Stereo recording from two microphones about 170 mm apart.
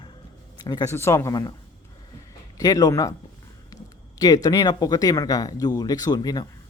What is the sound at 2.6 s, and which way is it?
Speech, 20° left (ahead or behind).